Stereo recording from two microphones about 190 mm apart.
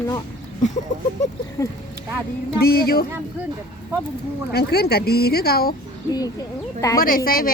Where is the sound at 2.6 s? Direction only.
55° left (ahead or behind).